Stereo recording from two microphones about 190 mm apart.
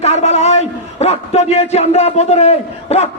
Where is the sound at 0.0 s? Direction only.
35° left (ahead or behind).